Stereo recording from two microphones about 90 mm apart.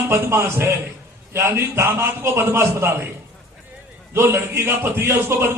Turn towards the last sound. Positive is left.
turn(degrees=-30)  # may be behind; listen again after turning